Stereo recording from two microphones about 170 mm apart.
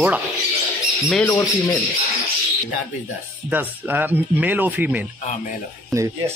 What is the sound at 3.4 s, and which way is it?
Speech, 10° right (ahead or behind).